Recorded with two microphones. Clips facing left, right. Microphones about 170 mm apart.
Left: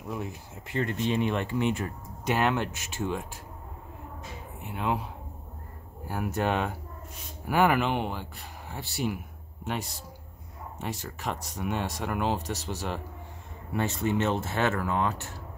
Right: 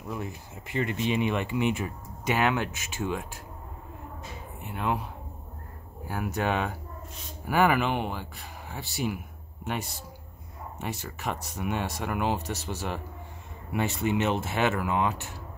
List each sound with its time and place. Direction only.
0.1 s speech: centre (ahead or behind)
4.6 s speech: centre (ahead or behind)
10.8 s speech: 5° right (ahead or behind)